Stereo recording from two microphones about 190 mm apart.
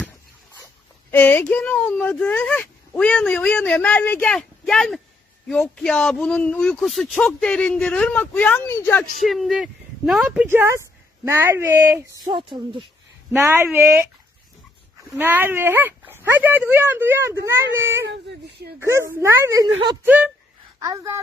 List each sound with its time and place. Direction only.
1.1 s speech: 10° left (ahead or behind)
9.2 s speech: centre (ahead or behind)
12.2 s speech: 25° right (ahead or behind)
13.3 s speech: 15° right (ahead or behind)
15.2 s speech: 10° right (ahead or behind)
18.4 s speech: 60° right (ahead or behind)
18.8 s speech: 15° right (ahead or behind)
20.7 s a woman's voice: 20° right (ahead or behind)